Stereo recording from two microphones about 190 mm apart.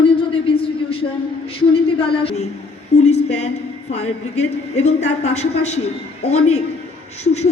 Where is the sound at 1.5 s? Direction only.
30° left (ahead or behind).